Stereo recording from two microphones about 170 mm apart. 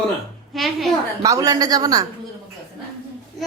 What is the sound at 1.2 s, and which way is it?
Speech, 20° right (ahead or behind).